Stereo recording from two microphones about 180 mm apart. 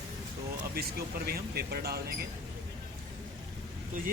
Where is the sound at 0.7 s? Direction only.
60° right (ahead or behind).